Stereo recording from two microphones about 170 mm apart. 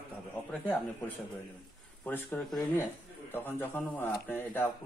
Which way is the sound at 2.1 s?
10° left (ahead or behind).